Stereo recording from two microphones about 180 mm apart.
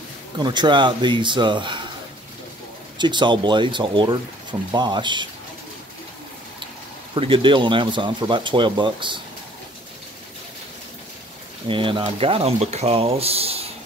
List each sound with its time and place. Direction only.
0.4 s speech: 25° right (ahead or behind)
3.0 s speech: 25° right (ahead or behind)
7.2 s speech: 30° right (ahead or behind)
11.6 s speech: 30° right (ahead or behind)